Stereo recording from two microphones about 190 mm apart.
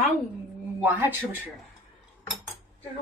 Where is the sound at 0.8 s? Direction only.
10° right (ahead or behind).